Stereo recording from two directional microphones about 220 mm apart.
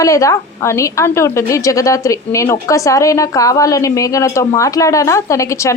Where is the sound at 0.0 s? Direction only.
15° left (ahead or behind).